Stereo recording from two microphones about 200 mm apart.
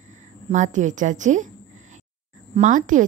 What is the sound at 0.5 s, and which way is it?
Speech, 40° right (ahead or behind).